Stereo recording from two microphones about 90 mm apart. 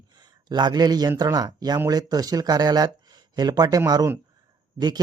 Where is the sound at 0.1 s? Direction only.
50° right (ahead or behind).